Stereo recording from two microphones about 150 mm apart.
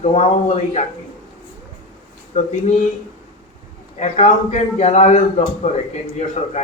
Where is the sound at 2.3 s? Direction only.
55° left (ahead or behind).